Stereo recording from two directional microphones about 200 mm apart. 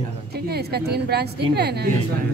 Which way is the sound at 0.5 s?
55° right (ahead or behind).